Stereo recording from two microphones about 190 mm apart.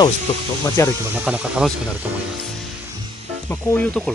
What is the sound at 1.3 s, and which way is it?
Speech, 5° right (ahead or behind).